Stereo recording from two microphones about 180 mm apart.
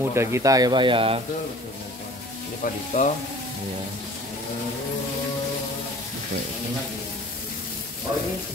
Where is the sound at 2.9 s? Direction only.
45° left (ahead or behind).